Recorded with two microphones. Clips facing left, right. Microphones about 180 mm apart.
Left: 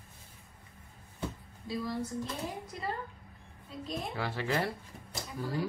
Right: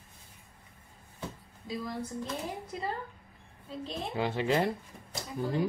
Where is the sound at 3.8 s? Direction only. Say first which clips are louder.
Right 3 dB; 20° right (ahead or behind).